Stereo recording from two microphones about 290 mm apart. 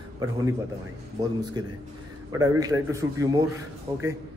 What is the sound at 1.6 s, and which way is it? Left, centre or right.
A man's voice, centre.